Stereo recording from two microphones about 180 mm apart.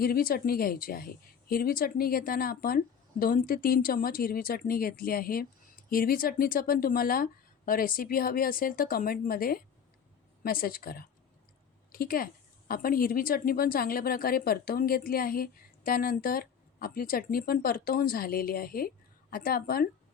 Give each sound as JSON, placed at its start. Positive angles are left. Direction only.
{"t": 0.0, "sound": "a woman's voice", "side_deg": 55}